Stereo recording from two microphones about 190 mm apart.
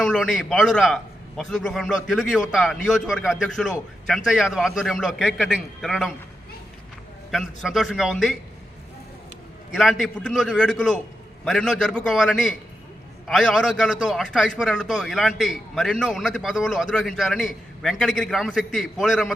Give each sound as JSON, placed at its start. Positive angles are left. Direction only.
{"t": 0.0, "sound": "a man's voice", "side_deg": 0}
{"t": 7.3, "sound": "a man's voice", "side_deg": 0}
{"t": 9.7, "sound": "a man's voice", "side_deg": 0}